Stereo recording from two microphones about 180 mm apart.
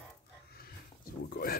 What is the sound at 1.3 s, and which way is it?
Speech, 55° left (ahead or behind).